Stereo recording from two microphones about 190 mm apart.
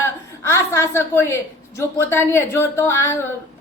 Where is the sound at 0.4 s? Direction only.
15° left (ahead or behind).